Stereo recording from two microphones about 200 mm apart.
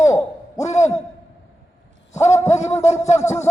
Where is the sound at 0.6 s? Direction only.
35° left (ahead or behind).